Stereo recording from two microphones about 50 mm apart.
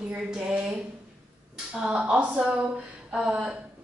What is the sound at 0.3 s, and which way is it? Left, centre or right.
Speech, right.